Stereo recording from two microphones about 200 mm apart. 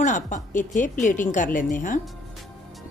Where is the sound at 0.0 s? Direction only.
40° left (ahead or behind).